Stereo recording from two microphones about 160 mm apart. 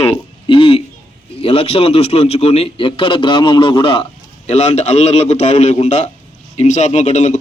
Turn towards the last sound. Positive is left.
turn(degrees=45)  # may be behind; listen again after turning